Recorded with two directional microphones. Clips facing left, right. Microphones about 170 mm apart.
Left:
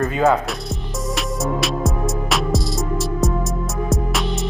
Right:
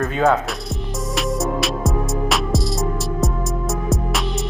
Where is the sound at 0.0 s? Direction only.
Centre (ahead or behind).